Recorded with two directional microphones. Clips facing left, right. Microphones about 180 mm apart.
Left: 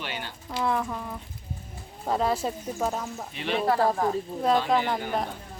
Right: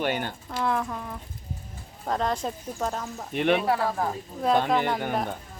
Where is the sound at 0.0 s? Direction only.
50° right (ahead or behind).